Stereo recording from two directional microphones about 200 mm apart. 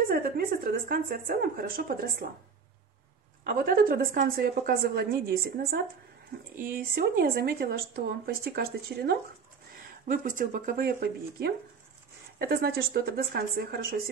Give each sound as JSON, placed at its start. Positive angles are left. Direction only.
{"t": 0.1, "sound": "speech", "side_deg": -45}
{"t": 3.4, "sound": "speech", "side_deg": -50}